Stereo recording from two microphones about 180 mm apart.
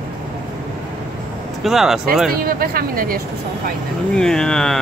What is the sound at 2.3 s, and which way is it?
Speech, 55° right (ahead or behind).